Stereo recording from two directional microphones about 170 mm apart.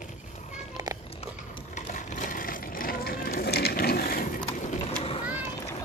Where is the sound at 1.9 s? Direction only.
45° left (ahead or behind).